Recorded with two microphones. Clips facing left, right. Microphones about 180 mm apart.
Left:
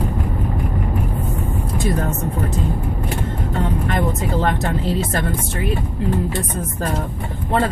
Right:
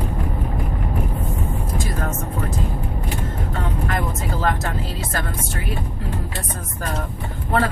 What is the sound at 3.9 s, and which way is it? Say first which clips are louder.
Vehicle: left 5 dB; 25° left (ahead or behind).